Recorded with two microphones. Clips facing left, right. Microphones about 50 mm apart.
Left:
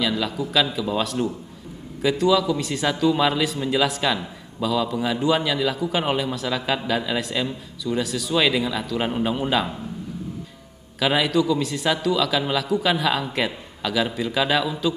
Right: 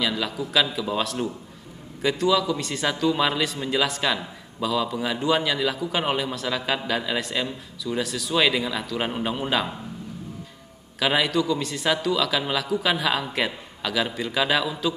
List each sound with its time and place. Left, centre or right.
0.0 s a man's voice: centre
11.0 s a man's voice: centre